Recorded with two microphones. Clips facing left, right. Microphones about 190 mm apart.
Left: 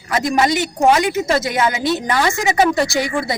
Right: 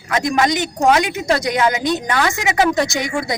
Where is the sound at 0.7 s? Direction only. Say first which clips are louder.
Left 2 dB; 5° left (ahead or behind).